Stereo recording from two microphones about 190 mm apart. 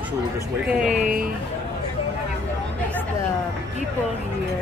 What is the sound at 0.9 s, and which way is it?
Speech, 45° right (ahead or behind).